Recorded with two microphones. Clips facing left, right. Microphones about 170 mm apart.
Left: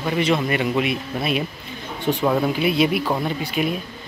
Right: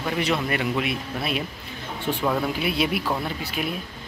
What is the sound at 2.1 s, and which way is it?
A man's voice, 5° left (ahead or behind).